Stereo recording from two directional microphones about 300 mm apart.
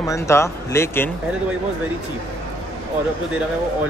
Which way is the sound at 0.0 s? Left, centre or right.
Centre.